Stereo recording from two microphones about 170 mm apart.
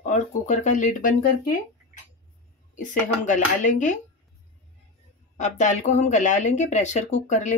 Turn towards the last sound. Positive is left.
turn(degrees=45)  # may be behind; listen again after turning